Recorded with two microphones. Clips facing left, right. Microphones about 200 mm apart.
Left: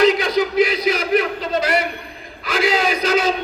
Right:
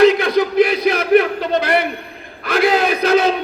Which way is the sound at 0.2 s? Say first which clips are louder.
Right 3 dB; 55° right (ahead or behind).